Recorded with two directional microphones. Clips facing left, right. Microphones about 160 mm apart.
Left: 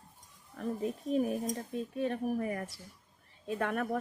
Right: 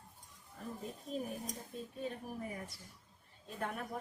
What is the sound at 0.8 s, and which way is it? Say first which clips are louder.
Speech: left 11 dB; 80° left.